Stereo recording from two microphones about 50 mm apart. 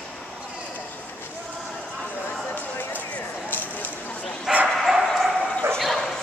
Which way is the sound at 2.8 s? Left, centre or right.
Left.